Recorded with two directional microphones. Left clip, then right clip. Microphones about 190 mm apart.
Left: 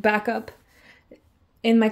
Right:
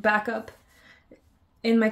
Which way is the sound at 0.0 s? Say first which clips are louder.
Left 2 dB; 30° left (ahead or behind).